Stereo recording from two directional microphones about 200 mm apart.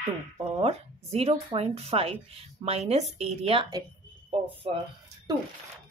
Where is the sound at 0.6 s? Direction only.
30° right (ahead or behind).